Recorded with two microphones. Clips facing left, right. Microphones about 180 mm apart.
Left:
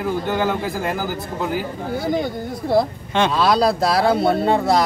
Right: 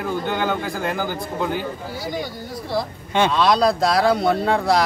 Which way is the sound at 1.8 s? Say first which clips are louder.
Left 6 dB; 55° left (ahead or behind).